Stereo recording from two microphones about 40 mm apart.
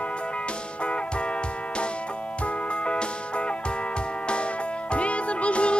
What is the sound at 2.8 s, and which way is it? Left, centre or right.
Music, left.